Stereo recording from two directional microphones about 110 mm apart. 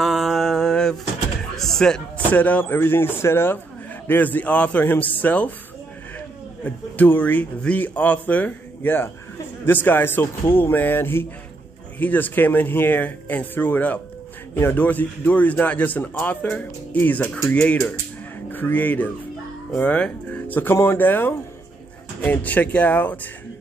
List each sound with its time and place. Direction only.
0.0 s mantra: centre (ahead or behind)
1.6 s a man's voice: 5° left (ahead or behind)